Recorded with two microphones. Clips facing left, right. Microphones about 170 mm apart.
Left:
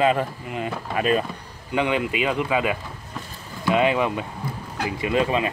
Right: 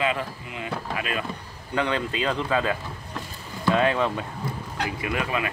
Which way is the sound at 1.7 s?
15° left (ahead or behind).